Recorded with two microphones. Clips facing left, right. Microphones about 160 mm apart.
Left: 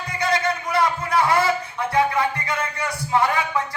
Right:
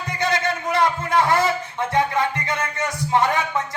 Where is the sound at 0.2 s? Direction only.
25° right (ahead or behind).